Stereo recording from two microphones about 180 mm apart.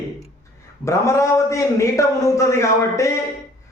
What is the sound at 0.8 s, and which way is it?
A man's voice, 15° left (ahead or behind).